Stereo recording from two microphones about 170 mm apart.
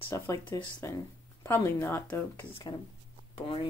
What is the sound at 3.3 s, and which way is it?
Speech, 30° left (ahead or behind).